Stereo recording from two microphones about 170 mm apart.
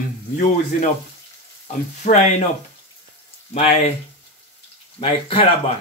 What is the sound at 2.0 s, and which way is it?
Speech, 45° left (ahead or behind).